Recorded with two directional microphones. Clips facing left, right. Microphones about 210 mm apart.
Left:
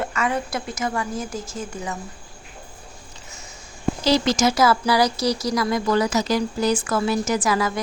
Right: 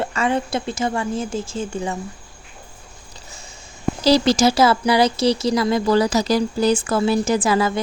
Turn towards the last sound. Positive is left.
turn(degrees=-30)  # may be behind; listen again after turning